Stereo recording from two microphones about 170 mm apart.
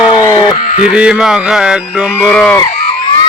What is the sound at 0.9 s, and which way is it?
Speech, 5° right (ahead or behind).